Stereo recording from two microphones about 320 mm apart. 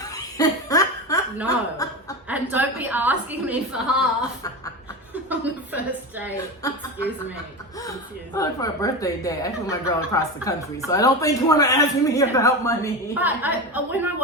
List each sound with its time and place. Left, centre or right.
0.0 s laughter: centre
1.5 s chuckle: centre
2.2 s a woman's voice: centre
5.3 s a sound: centre
6.3 s speech: centre
7.8 s speech: centre
13.1 s a woman's voice: centre